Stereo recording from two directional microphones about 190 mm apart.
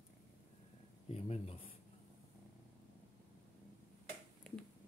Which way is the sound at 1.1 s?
35° left (ahead or behind).